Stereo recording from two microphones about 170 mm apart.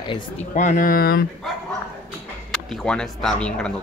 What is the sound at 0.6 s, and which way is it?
Speech, 50° left (ahead or behind).